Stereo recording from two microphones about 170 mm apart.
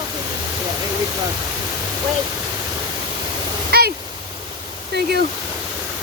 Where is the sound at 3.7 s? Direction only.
65° right (ahead or behind).